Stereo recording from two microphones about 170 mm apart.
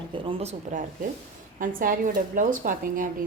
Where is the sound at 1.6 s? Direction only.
55° right (ahead or behind).